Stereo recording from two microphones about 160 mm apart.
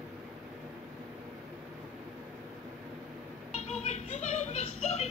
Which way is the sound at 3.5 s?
45° left (ahead or behind).